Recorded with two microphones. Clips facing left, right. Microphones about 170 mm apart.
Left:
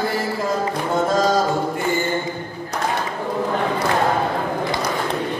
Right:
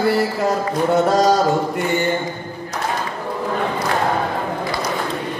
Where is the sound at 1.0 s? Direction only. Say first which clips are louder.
Right 1 dB; 75° right (ahead or behind).